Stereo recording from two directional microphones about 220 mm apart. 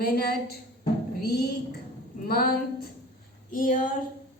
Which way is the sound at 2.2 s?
40° left (ahead or behind).